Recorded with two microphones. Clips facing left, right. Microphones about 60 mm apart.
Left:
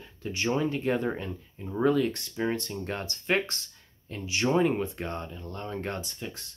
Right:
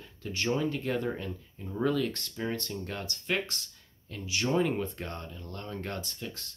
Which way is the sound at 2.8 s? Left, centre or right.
Left.